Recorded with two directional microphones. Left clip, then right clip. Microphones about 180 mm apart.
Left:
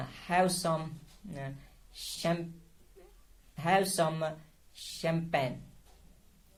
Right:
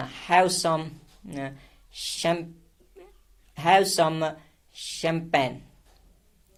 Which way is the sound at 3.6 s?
35° right (ahead or behind).